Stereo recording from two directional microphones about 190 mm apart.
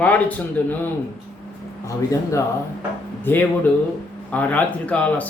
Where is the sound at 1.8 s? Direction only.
15° left (ahead or behind).